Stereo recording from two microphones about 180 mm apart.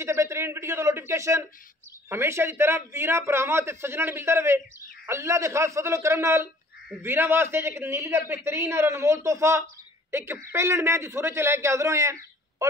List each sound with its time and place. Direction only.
0.0 s a man's voice: 15° right (ahead or behind)